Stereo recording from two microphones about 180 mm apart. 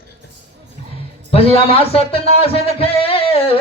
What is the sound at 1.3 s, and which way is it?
A man's voice, 35° left (ahead or behind).